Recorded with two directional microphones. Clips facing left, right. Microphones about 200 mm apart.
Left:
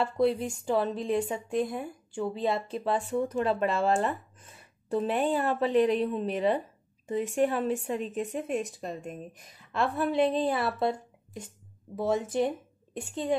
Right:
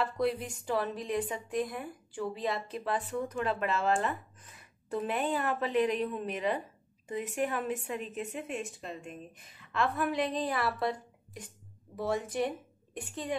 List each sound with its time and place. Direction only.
0.0 s a woman's voice: 30° left (ahead or behind)